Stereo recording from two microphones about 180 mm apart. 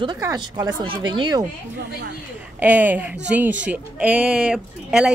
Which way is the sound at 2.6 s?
10° right (ahead or behind).